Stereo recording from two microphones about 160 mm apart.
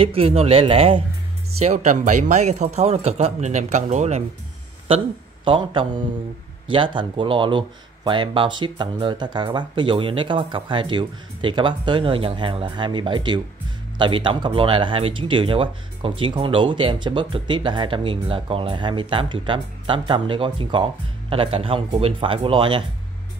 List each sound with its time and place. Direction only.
0.0 s speech: 35° right (ahead or behind)
1.6 s speech: 45° right (ahead or behind)
4.8 s speech: 35° right (ahead or behind)